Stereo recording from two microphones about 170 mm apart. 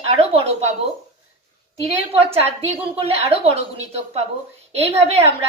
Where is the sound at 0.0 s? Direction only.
35° right (ahead or behind).